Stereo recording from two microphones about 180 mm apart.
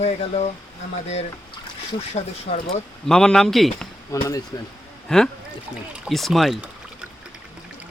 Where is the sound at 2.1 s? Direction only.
35° left (ahead or behind).